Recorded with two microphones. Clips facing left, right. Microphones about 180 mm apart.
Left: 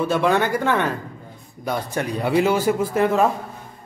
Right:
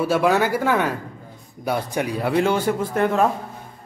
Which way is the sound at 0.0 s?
5° right (ahead or behind).